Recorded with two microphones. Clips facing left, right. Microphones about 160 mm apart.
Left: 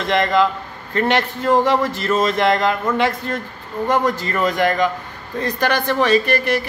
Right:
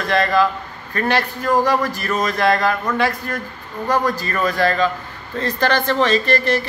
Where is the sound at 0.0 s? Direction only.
20° left (ahead or behind).